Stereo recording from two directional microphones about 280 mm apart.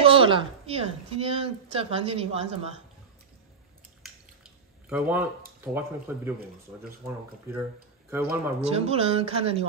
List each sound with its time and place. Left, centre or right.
0.0 s a woman's voice: centre
4.8 s a man's voice: centre
8.5 s a woman's voice: right